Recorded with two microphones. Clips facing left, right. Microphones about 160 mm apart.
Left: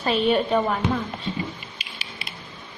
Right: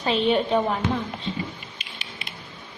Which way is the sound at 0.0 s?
25° right (ahead or behind).